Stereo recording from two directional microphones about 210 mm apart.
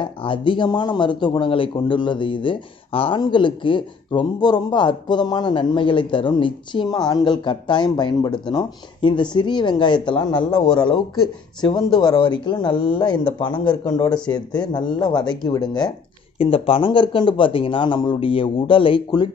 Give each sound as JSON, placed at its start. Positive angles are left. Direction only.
{"t": 0.0, "sound": "speech", "side_deg": 25}